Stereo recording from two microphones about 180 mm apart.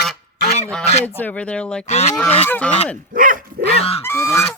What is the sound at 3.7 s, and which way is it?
Goose, 35° left (ahead or behind).